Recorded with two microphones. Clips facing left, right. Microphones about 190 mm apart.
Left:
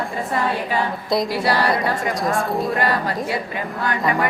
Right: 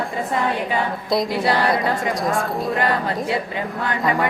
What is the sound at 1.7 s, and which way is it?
A woman's voice, centre (ahead or behind).